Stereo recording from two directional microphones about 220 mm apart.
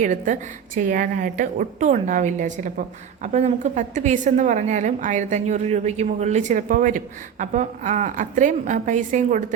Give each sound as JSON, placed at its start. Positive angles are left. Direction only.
{"t": 0.0, "sound": "a woman's voice", "side_deg": -35}